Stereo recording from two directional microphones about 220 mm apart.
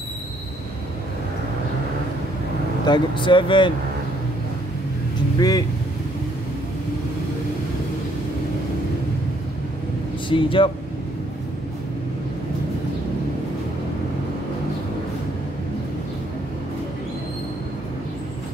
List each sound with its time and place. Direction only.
2.8 s speech: 20° left (ahead or behind)
5.4 s speech: 15° left (ahead or behind)
10.3 s speech: 25° left (ahead or behind)